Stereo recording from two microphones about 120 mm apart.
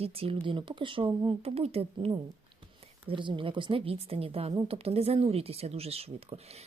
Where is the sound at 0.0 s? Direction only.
55° right (ahead or behind).